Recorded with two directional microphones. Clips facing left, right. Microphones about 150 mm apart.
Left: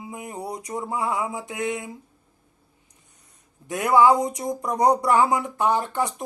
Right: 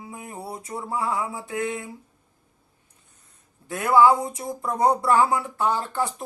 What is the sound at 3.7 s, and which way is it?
Speech, 15° left (ahead or behind).